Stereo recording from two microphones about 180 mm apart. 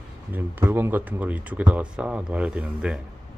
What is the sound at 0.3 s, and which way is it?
Speech, 10° right (ahead or behind).